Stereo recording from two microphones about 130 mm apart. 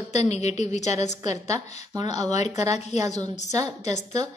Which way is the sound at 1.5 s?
30° right (ahead or behind).